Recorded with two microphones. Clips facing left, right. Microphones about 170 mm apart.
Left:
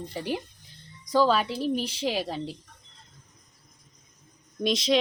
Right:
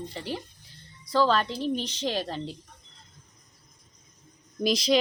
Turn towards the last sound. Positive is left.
turn(degrees=0)  # may be behind; listen again after turning